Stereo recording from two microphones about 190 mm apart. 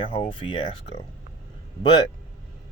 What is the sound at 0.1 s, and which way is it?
Speech, 30° left (ahead or behind).